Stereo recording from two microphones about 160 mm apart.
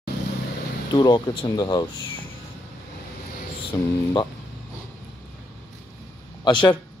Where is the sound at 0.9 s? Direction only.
30° left (ahead or behind).